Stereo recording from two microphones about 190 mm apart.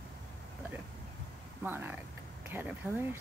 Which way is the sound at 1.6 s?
10° right (ahead or behind).